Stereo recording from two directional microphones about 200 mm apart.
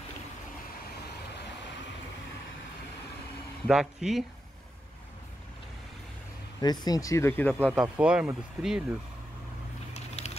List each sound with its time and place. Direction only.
3.6 s speech: centre (ahead or behind)
6.6 s speech: 20° left (ahead or behind)
8.0 s speech: 5° right (ahead or behind)
9.9 s mechanisms: 35° left (ahead or behind)